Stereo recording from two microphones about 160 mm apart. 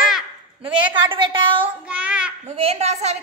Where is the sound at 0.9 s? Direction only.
30° right (ahead or behind).